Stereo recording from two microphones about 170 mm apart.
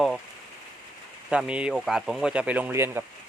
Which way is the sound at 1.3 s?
5° right (ahead or behind).